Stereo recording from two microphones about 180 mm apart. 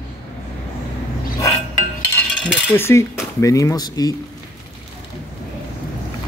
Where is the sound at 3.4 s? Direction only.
15° left (ahead or behind).